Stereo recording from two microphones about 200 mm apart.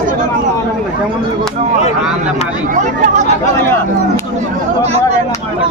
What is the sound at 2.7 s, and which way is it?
Speech, 35° right (ahead or behind).